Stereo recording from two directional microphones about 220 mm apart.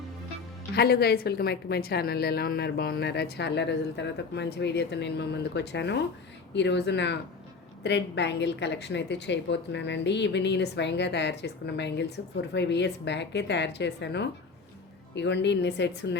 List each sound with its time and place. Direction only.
0.8 s a woman's voice: 45° left (ahead or behind)